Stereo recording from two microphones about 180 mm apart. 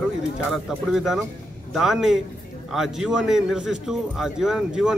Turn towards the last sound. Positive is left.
turn(degrees=-5)  # may be behind; listen again after turning